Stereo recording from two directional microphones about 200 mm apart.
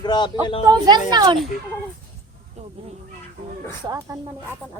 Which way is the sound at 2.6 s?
30° right (ahead or behind).